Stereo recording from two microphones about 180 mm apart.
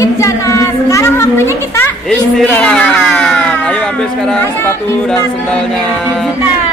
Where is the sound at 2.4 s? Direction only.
5° left (ahead or behind).